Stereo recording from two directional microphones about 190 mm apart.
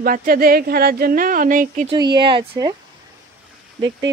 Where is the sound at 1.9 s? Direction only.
25° right (ahead or behind).